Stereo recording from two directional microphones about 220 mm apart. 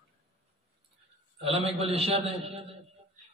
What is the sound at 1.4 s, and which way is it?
A man's voice, 25° right (ahead or behind).